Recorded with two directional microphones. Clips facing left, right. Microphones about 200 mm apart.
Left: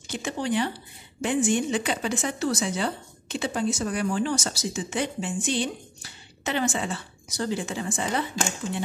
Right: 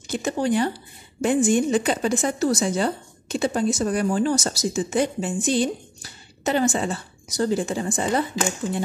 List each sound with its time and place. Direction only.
0.1 s speech: 40° right (ahead or behind)